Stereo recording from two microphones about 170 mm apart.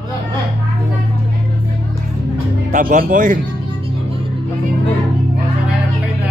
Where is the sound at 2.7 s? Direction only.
55° right (ahead or behind).